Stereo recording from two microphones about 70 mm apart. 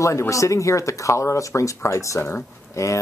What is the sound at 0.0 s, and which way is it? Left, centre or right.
Speech, left.